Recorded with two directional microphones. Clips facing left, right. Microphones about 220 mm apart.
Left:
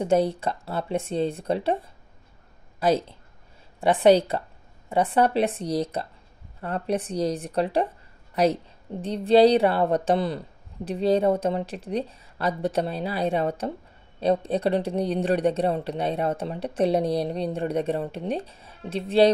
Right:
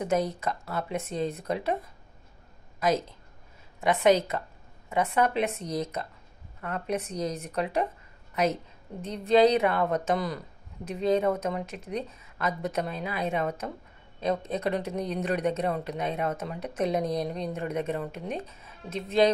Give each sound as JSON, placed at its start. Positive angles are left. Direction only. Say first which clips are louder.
{"t": 0.0, "sound": "a woman's voice", "louder": "left 5 dB", "side_deg": 30}